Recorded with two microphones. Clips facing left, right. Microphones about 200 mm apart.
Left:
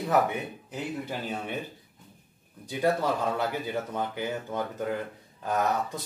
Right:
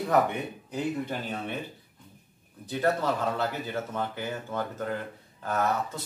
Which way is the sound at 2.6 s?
10° left (ahead or behind).